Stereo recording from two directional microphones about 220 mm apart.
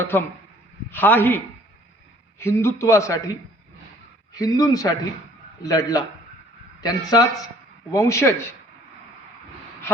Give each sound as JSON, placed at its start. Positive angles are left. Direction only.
{"t": 0.1, "sound": "a man's voice", "side_deg": 10}
{"t": 2.4, "sound": "a man's voice", "side_deg": 10}
{"t": 4.4, "sound": "a man's voice", "side_deg": 15}